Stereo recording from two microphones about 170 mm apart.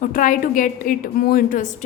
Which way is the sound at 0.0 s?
50° left (ahead or behind).